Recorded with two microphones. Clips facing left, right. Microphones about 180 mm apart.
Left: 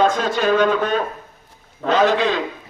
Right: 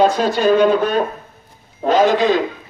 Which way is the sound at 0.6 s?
35° right (ahead or behind).